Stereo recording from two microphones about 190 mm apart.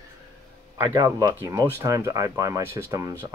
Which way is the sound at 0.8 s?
20° right (ahead or behind).